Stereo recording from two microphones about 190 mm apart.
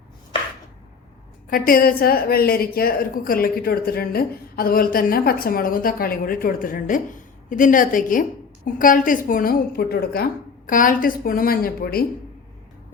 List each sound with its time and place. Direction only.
1.5 s a woman's voice: 50° left (ahead or behind)